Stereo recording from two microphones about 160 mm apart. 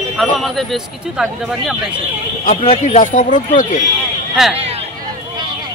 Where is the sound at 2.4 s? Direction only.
45° left (ahead or behind).